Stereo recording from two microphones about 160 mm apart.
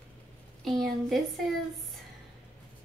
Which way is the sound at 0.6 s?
Centre (ahead or behind).